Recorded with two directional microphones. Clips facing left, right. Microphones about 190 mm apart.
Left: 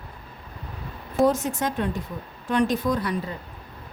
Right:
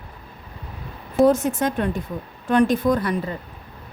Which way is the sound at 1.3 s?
50° right (ahead or behind).